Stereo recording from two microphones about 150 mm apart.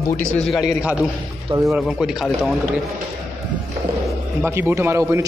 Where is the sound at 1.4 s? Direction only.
20° right (ahead or behind).